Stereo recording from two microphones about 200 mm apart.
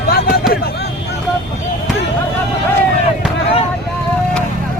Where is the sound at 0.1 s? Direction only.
50° left (ahead or behind).